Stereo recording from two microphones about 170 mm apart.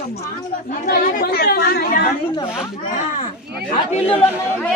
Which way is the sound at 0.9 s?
65° left (ahead or behind).